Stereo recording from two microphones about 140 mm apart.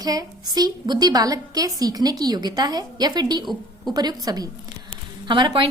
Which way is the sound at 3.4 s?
Centre (ahead or behind).